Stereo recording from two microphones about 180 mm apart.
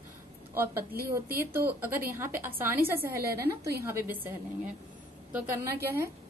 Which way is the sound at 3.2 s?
60° right (ahead or behind).